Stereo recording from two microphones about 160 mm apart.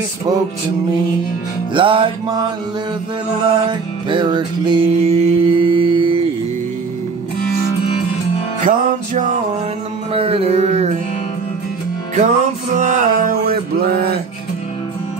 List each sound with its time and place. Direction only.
1.7 s music: 30° right (ahead or behind)
3.6 s music: 30° right (ahead or behind)
8.6 s music: 55° right (ahead or behind)
10.1 s music: 35° right (ahead or behind)
12.2 s music: 50° right (ahead or behind)
13.5 s mantra: 75° right (ahead or behind)